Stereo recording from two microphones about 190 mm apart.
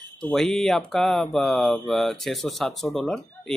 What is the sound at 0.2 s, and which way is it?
Speech, 5° left (ahead or behind).